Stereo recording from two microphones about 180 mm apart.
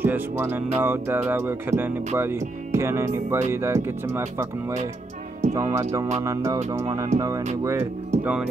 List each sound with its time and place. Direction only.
0.0 s speech: 10° right (ahead or behind)
6.7 s music: 20° right (ahead or behind)
7.6 s speech: 10° right (ahead or behind)